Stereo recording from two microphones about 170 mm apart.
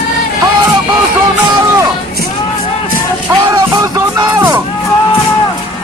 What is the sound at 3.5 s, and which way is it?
Music, 20° right (ahead or behind).